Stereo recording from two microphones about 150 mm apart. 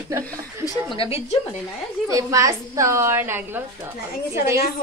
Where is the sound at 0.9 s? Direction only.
40° left (ahead or behind).